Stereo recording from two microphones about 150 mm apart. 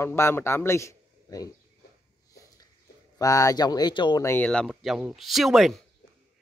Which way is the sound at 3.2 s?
20° left (ahead or behind).